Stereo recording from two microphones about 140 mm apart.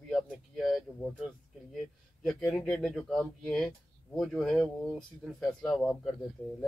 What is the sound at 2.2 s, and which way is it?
Speech, 5° left (ahead or behind).